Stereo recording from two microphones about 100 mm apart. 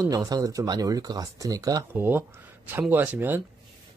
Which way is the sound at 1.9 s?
20° right (ahead or behind).